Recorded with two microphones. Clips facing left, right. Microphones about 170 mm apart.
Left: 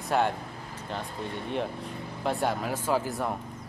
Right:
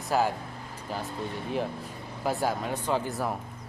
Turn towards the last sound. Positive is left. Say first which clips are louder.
# left 1 dB
turn(degrees=0)  # may be behind; listen again after turning